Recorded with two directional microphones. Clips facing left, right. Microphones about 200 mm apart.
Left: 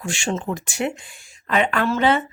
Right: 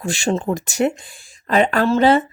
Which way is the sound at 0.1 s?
35° right (ahead or behind).